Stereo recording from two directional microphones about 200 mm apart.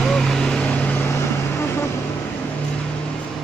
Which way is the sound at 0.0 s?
Centre (ahead or behind).